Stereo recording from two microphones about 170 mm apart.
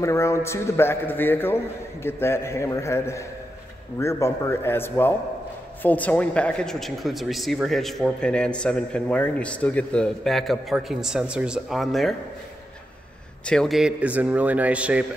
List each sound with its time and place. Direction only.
0.0 s a man's voice: 15° left (ahead or behind); by 12.2 s centre (ahead or behind)
13.5 s a man's voice: centre (ahead or behind)